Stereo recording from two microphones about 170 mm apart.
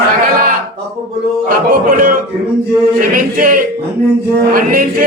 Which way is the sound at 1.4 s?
55° right (ahead or behind).